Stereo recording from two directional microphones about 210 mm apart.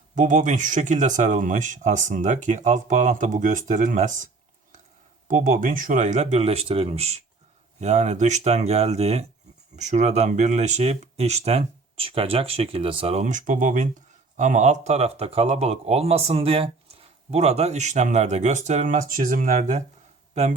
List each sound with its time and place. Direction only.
0.2 s speech: 35° right (ahead or behind)
5.3 s speech: 35° right (ahead or behind)